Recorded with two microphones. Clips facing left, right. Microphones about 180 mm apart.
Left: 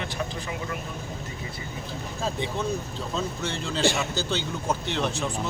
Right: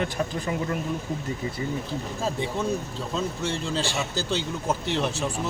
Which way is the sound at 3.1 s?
10° right (ahead or behind).